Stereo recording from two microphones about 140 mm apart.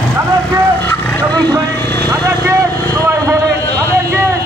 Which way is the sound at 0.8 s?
10° left (ahead or behind).